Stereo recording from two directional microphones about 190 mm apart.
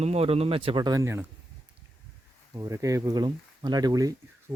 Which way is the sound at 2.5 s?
15° right (ahead or behind).